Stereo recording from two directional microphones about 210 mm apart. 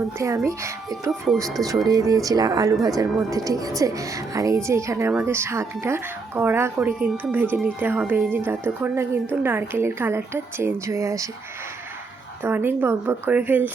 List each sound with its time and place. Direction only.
0.2 s speech: 15° right (ahead or behind)
12.4 s speech: 10° right (ahead or behind)